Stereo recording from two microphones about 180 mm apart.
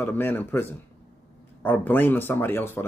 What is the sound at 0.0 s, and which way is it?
Speech, 10° left (ahead or behind).